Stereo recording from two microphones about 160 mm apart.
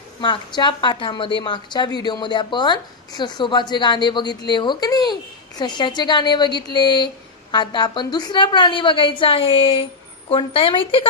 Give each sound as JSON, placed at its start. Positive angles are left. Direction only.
{"t": 0.2, "sound": "a woman's voice", "side_deg": 30}